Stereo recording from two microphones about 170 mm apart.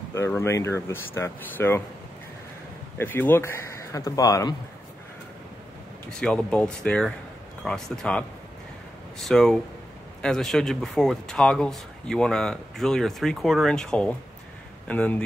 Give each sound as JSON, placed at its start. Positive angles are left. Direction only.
{"t": 0.1, "sound": "speech", "side_deg": 15}
{"t": 3.0, "sound": "speech", "side_deg": 10}
{"t": 6.0, "sound": "speech", "side_deg": 5}